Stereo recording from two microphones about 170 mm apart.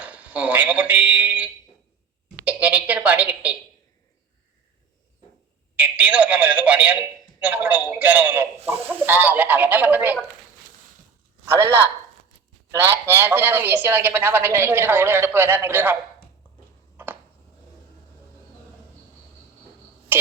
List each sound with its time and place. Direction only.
0.0 s a man's voice: 10° right (ahead or behind)
5.7 s a man's voice: 10° right (ahead or behind)
11.4 s speech: 15° right (ahead or behind)
12.7 s a man's voice: 15° right (ahead or behind)
17.0 s a sound: 10° right (ahead or behind)